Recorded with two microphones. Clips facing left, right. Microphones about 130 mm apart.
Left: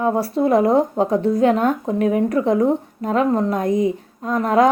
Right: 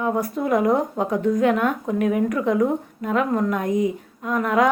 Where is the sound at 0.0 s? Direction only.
30° left (ahead or behind).